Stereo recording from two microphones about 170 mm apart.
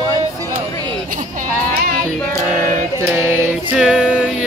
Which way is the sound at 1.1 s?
50° right (ahead or behind).